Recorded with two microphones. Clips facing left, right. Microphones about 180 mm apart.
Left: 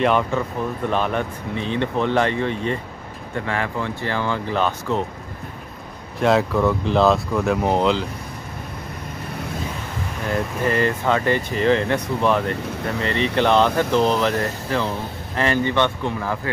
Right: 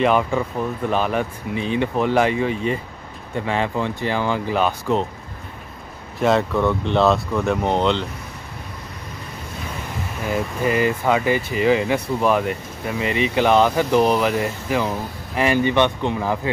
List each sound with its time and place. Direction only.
0.0 s speech: 5° right (ahead or behind)
3.3 s speech: 20° right (ahead or behind)
6.1 s speech: centre (ahead or behind)
10.2 s speech: 5° right (ahead or behind)